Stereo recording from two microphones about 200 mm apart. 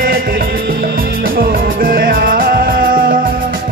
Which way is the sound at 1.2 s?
45° right (ahead or behind).